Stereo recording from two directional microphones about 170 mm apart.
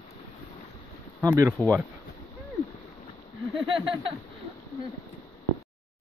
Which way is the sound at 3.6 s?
30° right (ahead or behind).